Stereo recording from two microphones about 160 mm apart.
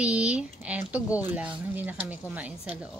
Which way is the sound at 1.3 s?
10° right (ahead or behind).